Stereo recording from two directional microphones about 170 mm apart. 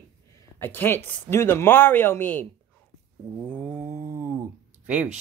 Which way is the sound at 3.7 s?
15° right (ahead or behind).